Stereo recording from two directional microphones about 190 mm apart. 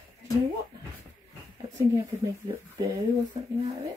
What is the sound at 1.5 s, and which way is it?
Speech, 15° right (ahead or behind).